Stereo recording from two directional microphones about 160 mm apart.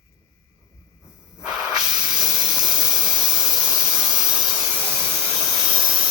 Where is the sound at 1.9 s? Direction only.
25° right (ahead or behind).